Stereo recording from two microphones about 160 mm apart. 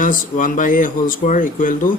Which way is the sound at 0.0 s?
55° left (ahead or behind).